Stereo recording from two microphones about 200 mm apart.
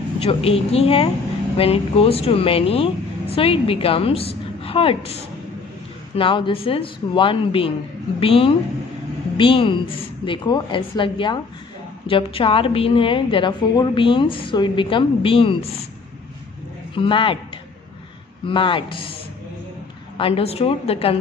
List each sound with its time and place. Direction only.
0.2 s a woman's voice: 30° left (ahead or behind)
16.9 s a woman's voice: 25° left (ahead or behind)
18.4 s a woman's voice: 25° left (ahead or behind)
20.2 s a woman's voice: 30° left (ahead or behind)